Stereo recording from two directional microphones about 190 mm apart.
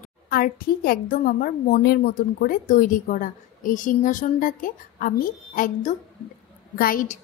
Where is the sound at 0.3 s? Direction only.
50° left (ahead or behind).